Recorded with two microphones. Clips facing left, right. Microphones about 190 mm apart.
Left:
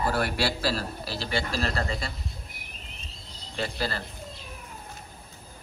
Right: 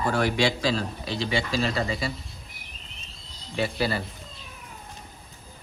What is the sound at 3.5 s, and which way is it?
Speech, 5° right (ahead or behind).